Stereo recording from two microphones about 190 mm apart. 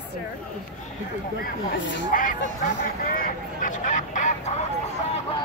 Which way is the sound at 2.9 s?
50° left (ahead or behind).